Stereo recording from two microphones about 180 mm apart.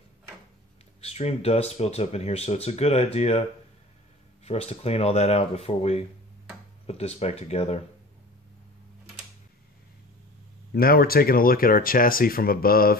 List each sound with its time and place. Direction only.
1.0 s speech: 35° left (ahead or behind)
4.5 s speech: 35° left (ahead or behind)
10.7 s speech: 55° left (ahead or behind)